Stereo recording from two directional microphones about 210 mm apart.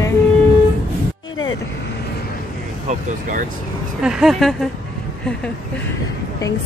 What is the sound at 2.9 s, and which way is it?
Speech, 40° right (ahead or behind).